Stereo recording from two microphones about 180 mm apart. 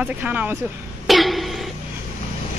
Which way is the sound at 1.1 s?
Centre (ahead or behind).